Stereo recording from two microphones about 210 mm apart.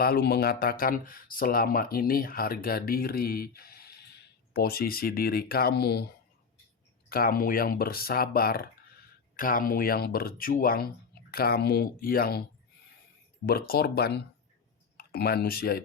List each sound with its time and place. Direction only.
0.0 s speech: 45° left (ahead or behind)
7.1 s speech: 45° left (ahead or behind)